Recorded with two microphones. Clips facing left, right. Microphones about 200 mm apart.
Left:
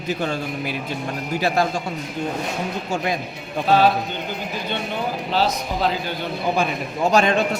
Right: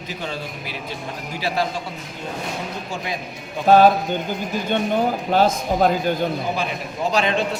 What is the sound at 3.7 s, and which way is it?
Speech, 45° right (ahead or behind).